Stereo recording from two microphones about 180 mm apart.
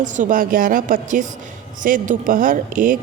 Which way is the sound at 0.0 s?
45° right (ahead or behind).